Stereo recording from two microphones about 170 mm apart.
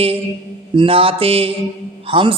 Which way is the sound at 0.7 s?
30° right (ahead or behind).